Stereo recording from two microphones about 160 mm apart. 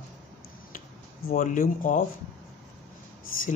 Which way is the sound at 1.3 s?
55° left (ahead or behind).